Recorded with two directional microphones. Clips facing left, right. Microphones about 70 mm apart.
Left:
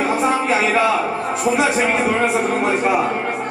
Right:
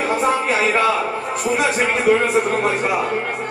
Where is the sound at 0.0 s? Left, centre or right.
Centre.